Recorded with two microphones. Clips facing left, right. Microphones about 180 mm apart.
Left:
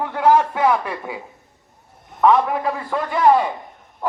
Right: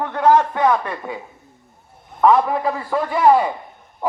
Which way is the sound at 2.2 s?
Centre (ahead or behind).